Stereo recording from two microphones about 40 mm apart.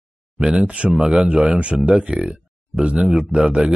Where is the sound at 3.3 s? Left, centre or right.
Right.